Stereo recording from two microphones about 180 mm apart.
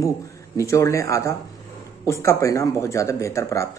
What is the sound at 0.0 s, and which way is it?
Speech, 15° left (ahead or behind).